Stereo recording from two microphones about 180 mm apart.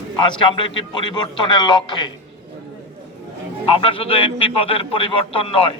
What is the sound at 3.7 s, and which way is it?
A man's voice, 30° left (ahead or behind).